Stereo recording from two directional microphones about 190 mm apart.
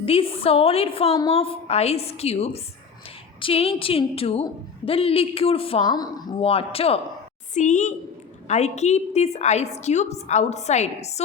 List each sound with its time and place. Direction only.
0.0 s a woman's voice: 30° left (ahead or behind)